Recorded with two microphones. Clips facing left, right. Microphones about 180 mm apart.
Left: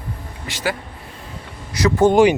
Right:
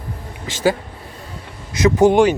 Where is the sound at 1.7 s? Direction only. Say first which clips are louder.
Right 2 dB; 20° right (ahead or behind).